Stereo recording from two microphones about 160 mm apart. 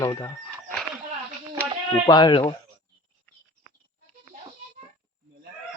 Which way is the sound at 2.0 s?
30° left (ahead or behind).